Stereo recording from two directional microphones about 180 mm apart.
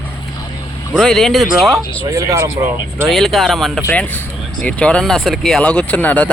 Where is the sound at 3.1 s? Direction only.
Centre (ahead or behind).